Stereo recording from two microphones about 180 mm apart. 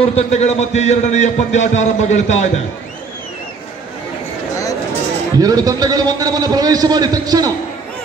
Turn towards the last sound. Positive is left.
turn(degrees=-20)  # may be behind; listen again after turning